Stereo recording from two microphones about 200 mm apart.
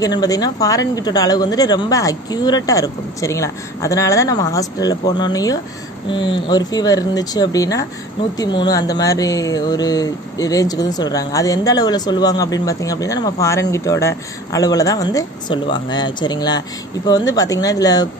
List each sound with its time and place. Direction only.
0.0 s speech: 20° left (ahead or behind)